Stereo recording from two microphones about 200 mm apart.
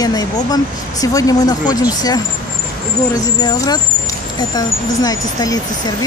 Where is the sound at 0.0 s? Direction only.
20° left (ahead or behind).